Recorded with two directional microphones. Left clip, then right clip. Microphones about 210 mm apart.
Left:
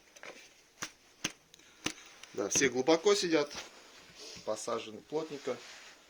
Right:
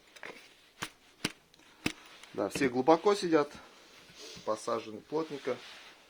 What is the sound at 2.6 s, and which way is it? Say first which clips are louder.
Speech: right 2 dB; 20° right (ahead or behind).